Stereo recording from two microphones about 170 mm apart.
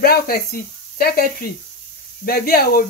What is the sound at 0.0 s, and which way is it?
Speech, 60° left (ahead or behind).